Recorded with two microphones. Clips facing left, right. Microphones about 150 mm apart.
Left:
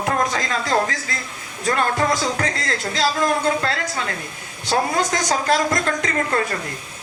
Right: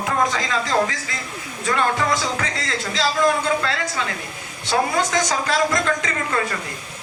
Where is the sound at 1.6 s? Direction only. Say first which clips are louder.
Left 1 dB; 45° left (ahead or behind).